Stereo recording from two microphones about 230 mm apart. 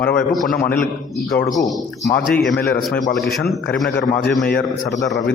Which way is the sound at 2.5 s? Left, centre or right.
Left.